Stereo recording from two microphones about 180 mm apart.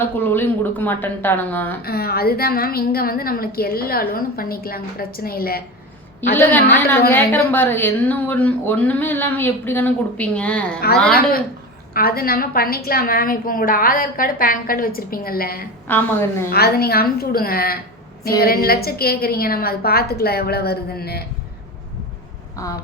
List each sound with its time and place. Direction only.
0.0 s speech: 10° left (ahead or behind)
1.8 s a woman's voice: 60° left (ahead or behind)
6.3 s speech: 10° left (ahead or behind)
11.1 s a woman's voice: 55° left (ahead or behind)
15.9 s speech: 10° left (ahead or behind)
16.5 s a woman's voice: 60° left (ahead or behind)
22.6 s speech: 20° left (ahead or behind)